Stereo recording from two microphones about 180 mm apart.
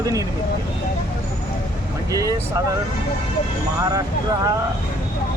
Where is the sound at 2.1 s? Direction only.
20° right (ahead or behind).